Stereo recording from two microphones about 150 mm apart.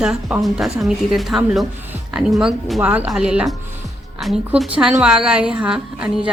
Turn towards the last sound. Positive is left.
turn(degrees=-5)  # may be behind; listen again after turning